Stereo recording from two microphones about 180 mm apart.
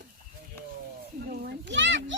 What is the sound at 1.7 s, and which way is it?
Children playing, 85° right.